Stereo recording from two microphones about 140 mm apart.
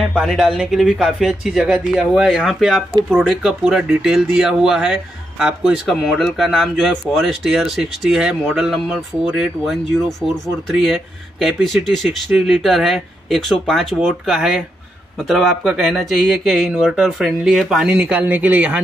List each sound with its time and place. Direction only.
0.1 s speech: centre (ahead or behind)